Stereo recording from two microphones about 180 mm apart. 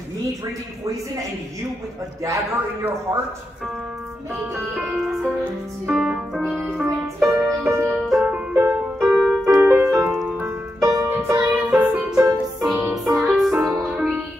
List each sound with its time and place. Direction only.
2.2 s speech: 15° right (ahead or behind)
4.7 s music: 5° right (ahead or behind)
7.9 s music: centre (ahead or behind)
10.8 s music: 20° right (ahead or behind)
12.5 s music: centre (ahead or behind)